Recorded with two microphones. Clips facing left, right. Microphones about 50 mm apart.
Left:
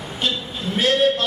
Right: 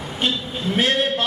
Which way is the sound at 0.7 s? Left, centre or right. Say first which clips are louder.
Left 2 dB; right.